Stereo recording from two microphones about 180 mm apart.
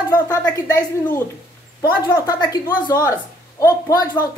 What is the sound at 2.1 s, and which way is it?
A woman's voice, 20° left (ahead or behind).